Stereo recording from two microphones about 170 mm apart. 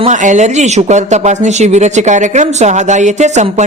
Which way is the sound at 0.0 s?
45° right (ahead or behind).